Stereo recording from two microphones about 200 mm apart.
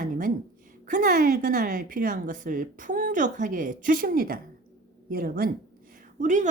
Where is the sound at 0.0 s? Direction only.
40° right (ahead or behind).